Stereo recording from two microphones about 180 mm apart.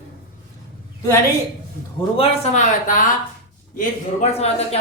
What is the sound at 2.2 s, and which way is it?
Speech, 40° left (ahead or behind).